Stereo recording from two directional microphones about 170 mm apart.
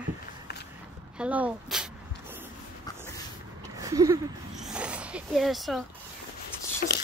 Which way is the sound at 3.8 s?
20° right (ahead or behind).